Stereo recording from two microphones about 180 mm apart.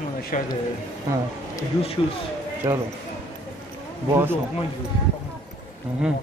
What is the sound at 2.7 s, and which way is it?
Speech, 15° right (ahead or behind).